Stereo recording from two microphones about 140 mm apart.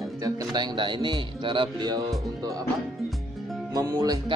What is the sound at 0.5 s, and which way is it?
Speech, 35° right (ahead or behind).